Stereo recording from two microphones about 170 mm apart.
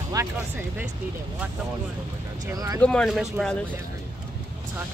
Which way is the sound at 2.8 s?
5° left (ahead or behind).